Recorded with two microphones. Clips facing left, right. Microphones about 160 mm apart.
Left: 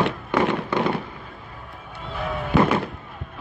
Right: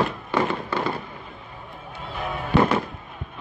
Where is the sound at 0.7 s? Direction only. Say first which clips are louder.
Left 4 dB; 20° left (ahead or behind).